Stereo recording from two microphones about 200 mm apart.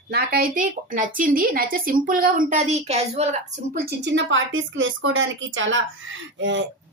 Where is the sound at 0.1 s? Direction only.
50° right (ahead or behind); by 3.4 s 35° right (ahead or behind).